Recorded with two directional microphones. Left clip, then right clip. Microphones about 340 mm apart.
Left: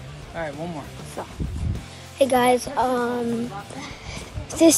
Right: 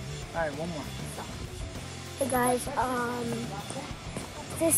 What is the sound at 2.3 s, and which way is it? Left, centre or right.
Speech, left.